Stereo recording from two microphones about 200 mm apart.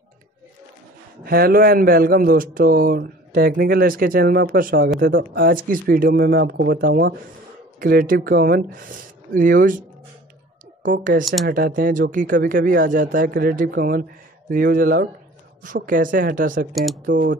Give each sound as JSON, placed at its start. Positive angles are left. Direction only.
{"t": 1.2, "sound": "a man's voice", "side_deg": -50}
{"t": 16.7, "sound": "speech", "side_deg": 0}
{"t": 17.0, "sound": "speech", "side_deg": -40}